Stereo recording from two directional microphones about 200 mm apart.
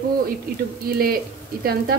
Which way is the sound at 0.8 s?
50° right (ahead or behind).